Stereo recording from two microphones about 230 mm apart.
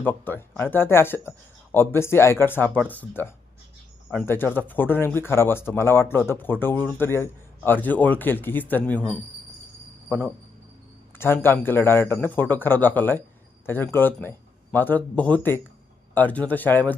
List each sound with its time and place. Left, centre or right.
0.0 s speech: centre
11.2 s speech: centre